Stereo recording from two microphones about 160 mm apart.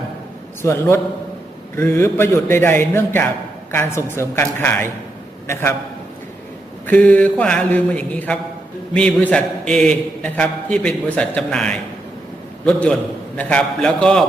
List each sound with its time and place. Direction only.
0.6 s speech: 15° left (ahead or behind)
6.8 s a man's voice: 10° left (ahead or behind)